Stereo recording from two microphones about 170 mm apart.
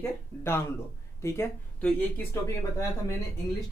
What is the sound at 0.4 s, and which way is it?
Speech, 15° left (ahead or behind).